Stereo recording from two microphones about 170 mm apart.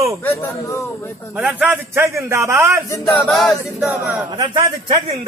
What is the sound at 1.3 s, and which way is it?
A man's voice, 5° right (ahead or behind).